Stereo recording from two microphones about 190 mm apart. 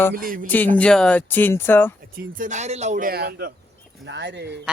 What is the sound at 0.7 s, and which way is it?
Speech, 5° left (ahead or behind).